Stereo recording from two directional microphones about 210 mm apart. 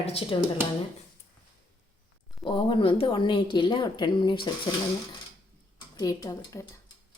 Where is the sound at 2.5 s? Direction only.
25° left (ahead or behind).